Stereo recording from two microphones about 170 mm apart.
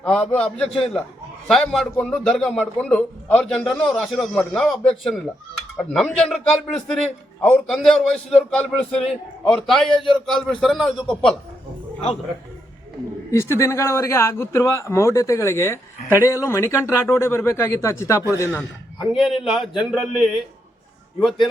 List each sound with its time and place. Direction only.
0.0 s a man's voice: 5° left (ahead or behind)
13.3 s speech: 15° left (ahead or behind)
19.1 s a man's voice: centre (ahead or behind)